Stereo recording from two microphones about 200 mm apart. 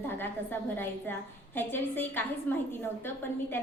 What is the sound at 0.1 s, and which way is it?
A woman's voice, 10° left (ahead or behind).